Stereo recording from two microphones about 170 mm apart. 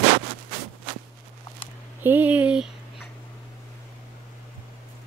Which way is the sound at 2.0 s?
10° right (ahead or behind).